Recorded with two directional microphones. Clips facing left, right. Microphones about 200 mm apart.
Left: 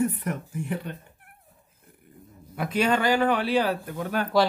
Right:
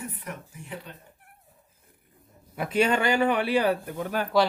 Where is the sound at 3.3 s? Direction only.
55° right (ahead or behind).